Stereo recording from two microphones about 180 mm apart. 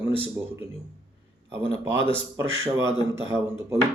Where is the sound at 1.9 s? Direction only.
30° left (ahead or behind).